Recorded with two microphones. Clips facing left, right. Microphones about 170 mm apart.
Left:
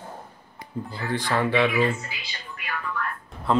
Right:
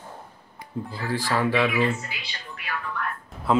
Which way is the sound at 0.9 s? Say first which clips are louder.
Even; centre (ahead or behind).